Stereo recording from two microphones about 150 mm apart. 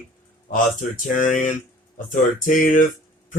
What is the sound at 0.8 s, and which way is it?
A man's voice, 60° left (ahead or behind).